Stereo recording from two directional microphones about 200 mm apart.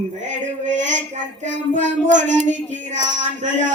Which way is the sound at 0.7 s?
40° right (ahead or behind).